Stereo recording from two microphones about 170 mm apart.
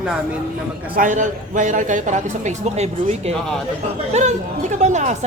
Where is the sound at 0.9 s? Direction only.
50° right (ahead or behind).